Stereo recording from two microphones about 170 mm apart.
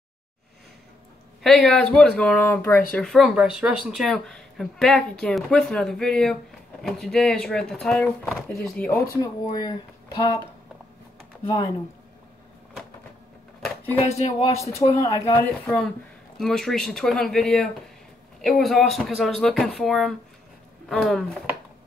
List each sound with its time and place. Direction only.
1.4 s speech: centre (ahead or behind)
9.0 s speech: 20° left (ahead or behind)
11.4 s speech: 30° left (ahead or behind)
13.9 s speech: 40° left (ahead or behind)
14.6 s speech: 20° left (ahead or behind); by 21.5 s centre (ahead or behind)